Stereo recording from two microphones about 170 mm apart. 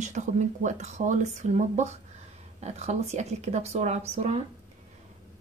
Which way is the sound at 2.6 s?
40° right (ahead or behind).